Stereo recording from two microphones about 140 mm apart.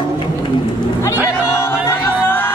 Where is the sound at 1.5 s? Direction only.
20° left (ahead or behind).